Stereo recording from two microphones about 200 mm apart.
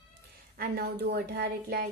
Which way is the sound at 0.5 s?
50° right (ahead or behind).